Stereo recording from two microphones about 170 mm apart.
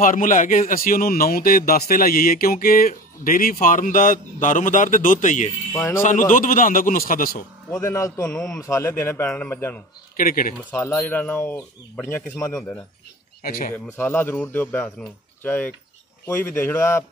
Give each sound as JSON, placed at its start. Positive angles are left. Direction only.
{"t": 0.0, "sound": "speech", "side_deg": 50}
{"t": 5.7, "sound": "speech", "side_deg": 15}
{"t": 6.0, "sound": "a man's voice", "side_deg": 50}
{"t": 7.8, "sound": "speech", "side_deg": 15}
{"t": 8.3, "sound": "a man's voice", "side_deg": 5}
{"t": 8.5, "sound": "speech", "side_deg": 20}
{"t": 10.1, "sound": "speech", "side_deg": 55}
{"t": 10.7, "sound": "speech", "side_deg": 10}
{"t": 13.4, "sound": "speech", "side_deg": 60}
{"t": 13.8, "sound": "speech", "side_deg": 15}